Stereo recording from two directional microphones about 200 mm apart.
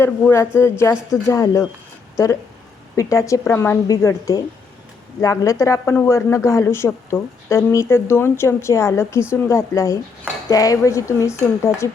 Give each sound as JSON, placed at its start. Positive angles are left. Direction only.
{"t": 0.0, "sound": "speech", "side_deg": 10}